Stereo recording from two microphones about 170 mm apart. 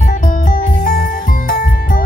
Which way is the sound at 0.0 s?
50° left (ahead or behind).